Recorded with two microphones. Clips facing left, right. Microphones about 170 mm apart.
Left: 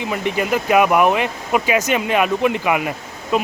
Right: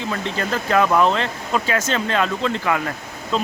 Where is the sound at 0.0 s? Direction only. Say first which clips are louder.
Left 4 dB; 15° left (ahead or behind).